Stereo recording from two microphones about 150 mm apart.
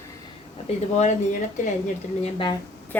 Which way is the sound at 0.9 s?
50° left (ahead or behind).